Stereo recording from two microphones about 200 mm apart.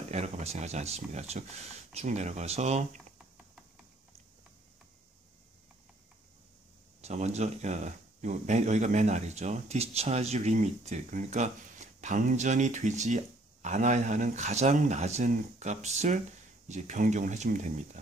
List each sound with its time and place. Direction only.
0.1 s speech: 35° right (ahead or behind)
7.0 s speech: 35° right (ahead or behind)